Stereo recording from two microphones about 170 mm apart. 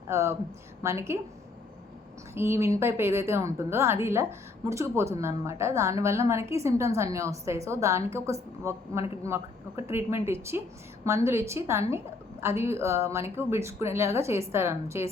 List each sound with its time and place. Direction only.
0.1 s a woman's voice: 15° right (ahead or behind)
2.3 s a woman's voice: 15° right (ahead or behind)